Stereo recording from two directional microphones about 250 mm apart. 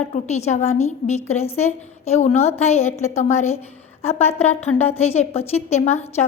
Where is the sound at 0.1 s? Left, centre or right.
Left.